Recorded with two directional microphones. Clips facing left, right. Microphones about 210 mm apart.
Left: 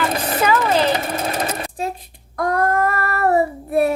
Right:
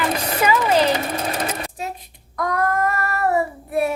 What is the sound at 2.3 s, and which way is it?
Child singing, 30° left (ahead or behind).